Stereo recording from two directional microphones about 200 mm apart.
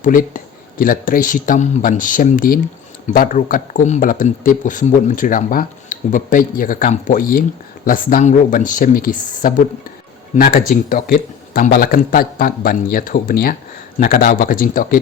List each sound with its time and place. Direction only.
0.0 s a man's voice: 45° left (ahead or behind)